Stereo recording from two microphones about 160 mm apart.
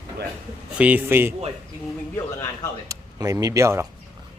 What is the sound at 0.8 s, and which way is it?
Speech, 10° right (ahead or behind).